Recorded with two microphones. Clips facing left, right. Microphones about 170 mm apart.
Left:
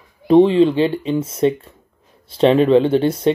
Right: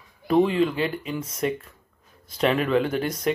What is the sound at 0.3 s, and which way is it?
Speech, 30° left (ahead or behind).